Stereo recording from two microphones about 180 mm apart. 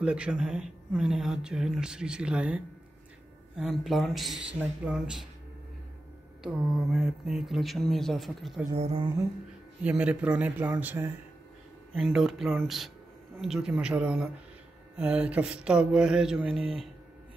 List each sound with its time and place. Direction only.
0.0 s speech: 5° right (ahead or behind)
6.4 s speech: 5° right (ahead or behind)
8.7 s mantra: 30° right (ahead or behind)
9.8 s speech: 5° right (ahead or behind)